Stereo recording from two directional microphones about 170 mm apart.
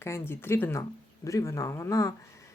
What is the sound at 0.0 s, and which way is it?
Speech, 15° left (ahead or behind).